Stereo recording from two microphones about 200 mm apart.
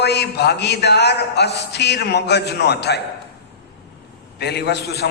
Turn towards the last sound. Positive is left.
turn(degrees=55)  # may be behind; listen again after turning